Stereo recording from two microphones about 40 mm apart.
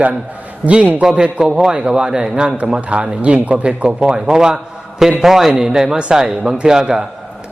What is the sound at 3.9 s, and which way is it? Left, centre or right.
A man's voice, right.